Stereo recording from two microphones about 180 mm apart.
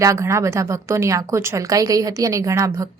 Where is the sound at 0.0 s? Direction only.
15° right (ahead or behind).